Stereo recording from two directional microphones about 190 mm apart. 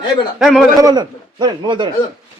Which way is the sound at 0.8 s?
20° right (ahead or behind).